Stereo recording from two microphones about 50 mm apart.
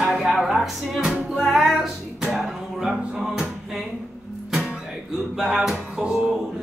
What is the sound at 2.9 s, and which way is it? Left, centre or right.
Music, centre.